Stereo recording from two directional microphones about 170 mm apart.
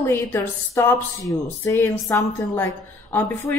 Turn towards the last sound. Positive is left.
turn(degrees=10)  # may be behind; listen again after turning